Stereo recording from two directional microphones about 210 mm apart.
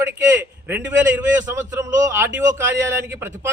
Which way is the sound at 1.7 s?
15° right (ahead or behind).